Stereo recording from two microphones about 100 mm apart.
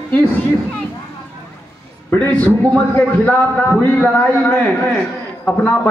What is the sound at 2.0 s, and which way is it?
A man's voice, 15° left (ahead or behind).